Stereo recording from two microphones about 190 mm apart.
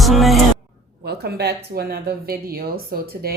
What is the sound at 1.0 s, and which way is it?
Speech, 60° right (ahead or behind).